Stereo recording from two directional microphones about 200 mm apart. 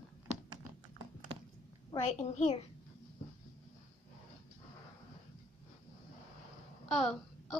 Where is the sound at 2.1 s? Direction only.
35° left (ahead or behind).